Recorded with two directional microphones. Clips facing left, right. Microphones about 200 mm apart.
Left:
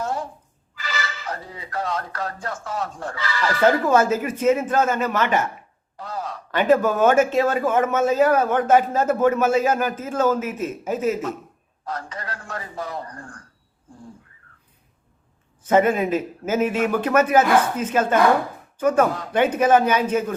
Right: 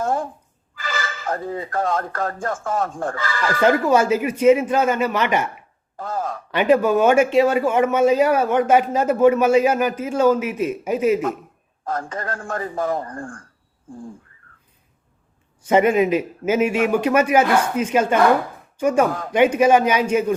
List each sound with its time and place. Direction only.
0.0 s a sound: 50° right (ahead or behind)
0.8 s speech: 50° right (ahead or behind)
3.8 s speech: 10° right (ahead or behind)
6.0 s speech: 50° right (ahead or behind)
6.5 s speech: 10° right (ahead or behind)
11.9 s speech: 50° right (ahead or behind)
15.6 s speech: 10° right (ahead or behind)